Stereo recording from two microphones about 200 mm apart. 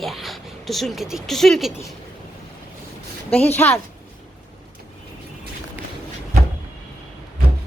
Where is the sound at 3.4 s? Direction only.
30° left (ahead or behind).